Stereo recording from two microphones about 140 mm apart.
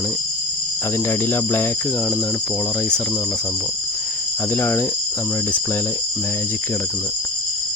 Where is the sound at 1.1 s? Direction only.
15° left (ahead or behind).